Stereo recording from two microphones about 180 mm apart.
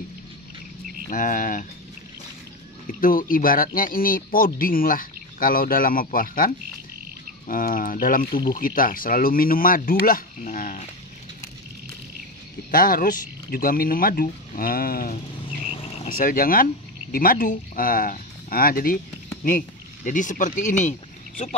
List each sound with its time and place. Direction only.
1.0 s speech: 50° left (ahead or behind)
3.0 s speech: 50° left (ahead or behind)
12.7 s speech: 50° left (ahead or behind)
20.1 s speech: 45° left (ahead or behind)